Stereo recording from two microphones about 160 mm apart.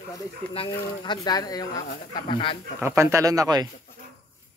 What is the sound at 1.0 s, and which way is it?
A woman's voice, 25° left (ahead or behind).